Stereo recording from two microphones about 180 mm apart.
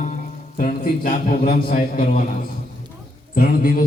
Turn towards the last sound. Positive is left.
turn(degrees=50)  # may be behind; listen again after turning